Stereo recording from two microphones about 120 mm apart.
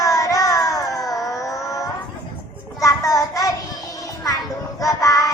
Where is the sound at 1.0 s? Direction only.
Centre (ahead or behind).